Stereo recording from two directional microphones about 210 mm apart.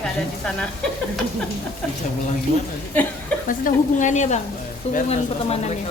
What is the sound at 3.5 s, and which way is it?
A woman's voice, 40° left (ahead or behind).